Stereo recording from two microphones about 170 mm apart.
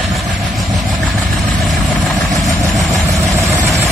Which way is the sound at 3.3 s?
15° right (ahead or behind).